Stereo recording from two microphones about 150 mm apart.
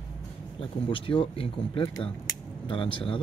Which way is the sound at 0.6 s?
35° left (ahead or behind).